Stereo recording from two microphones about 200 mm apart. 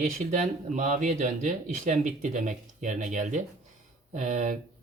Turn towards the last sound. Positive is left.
turn(degrees=-40)  # may be behind; listen again after turning